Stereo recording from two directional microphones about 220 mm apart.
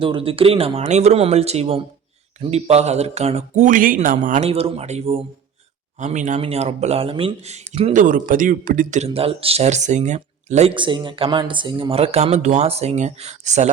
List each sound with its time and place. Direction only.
0.0 s speech: 25° right (ahead or behind)